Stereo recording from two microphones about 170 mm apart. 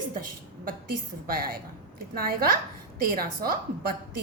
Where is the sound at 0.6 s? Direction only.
60° right (ahead or behind).